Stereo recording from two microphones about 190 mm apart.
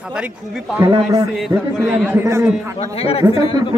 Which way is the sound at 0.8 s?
20° right (ahead or behind).